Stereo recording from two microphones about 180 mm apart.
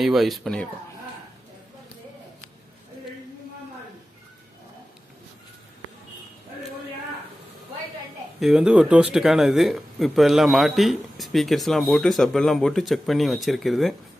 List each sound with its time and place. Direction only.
0.0 s speech: centre (ahead or behind)
8.4 s speech: centre (ahead or behind)